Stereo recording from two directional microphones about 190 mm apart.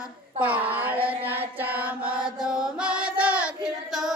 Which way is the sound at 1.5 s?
10° right (ahead or behind).